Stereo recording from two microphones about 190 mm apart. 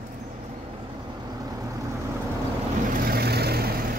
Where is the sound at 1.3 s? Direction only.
20° right (ahead or behind).